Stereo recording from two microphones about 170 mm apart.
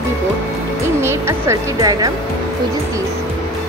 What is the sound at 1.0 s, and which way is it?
Speech, 15° right (ahead or behind).